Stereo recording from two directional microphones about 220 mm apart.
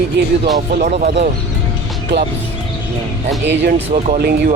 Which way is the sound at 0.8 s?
35° right (ahead or behind).